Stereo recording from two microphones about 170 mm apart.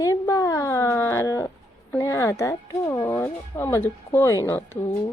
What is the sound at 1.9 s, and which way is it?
Speech, 15° left (ahead or behind).